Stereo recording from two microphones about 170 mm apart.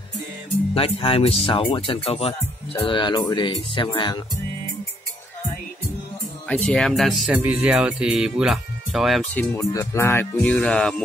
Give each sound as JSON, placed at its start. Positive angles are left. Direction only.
{"t": 0.7, "sound": "speech", "side_deg": 35}
{"t": 6.5, "sound": "speech", "side_deg": 5}
{"t": 9.3, "sound": "speech", "side_deg": 10}